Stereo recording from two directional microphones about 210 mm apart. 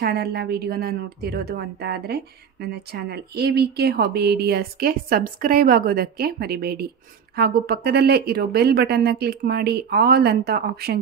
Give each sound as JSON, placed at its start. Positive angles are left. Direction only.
{"t": 0.0, "sound": "a woman's voice", "side_deg": -50}